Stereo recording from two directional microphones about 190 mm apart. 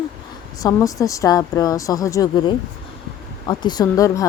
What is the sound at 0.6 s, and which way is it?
Speech, 15° left (ahead or behind).